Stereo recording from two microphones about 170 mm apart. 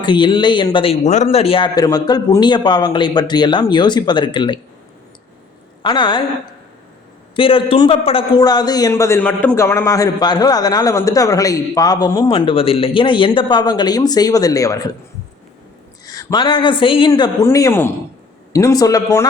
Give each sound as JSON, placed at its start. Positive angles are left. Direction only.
{"t": 0.0, "sound": "a man's voice", "side_deg": 25}
{"t": 5.8, "sound": "a man's voice", "side_deg": 25}
{"t": 7.3, "sound": "a man's voice", "side_deg": 30}
{"t": 16.0, "sound": "a man's voice", "side_deg": 25}